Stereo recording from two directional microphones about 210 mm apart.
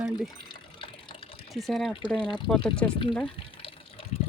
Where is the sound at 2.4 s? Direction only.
5° left (ahead or behind).